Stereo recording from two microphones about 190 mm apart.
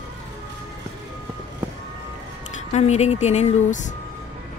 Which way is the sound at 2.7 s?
35° left (ahead or behind).